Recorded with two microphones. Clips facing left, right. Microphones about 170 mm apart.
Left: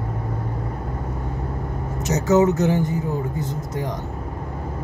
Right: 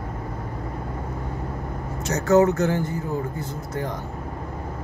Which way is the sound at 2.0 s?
20° left (ahead or behind).